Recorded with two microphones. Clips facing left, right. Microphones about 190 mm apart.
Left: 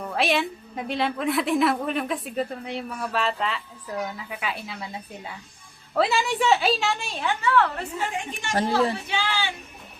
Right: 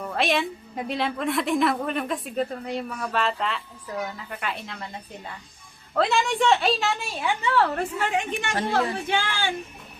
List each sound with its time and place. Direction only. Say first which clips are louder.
0.0 s a woman's voice: even; centre (ahead or behind)
7.4 s a woman's voice: left 1 dB; 30° right (ahead or behind)
7.8 s a woman's voice: right 4 dB; 70° right (ahead or behind)
9.0 s speech: right 1 dB; 50° right (ahead or behind)